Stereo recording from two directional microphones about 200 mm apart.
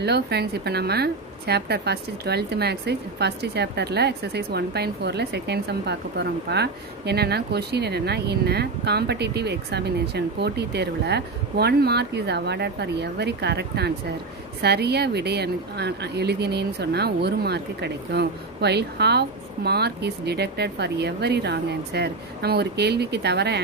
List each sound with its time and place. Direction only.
0.0 s a woman's voice: 55° right (ahead or behind)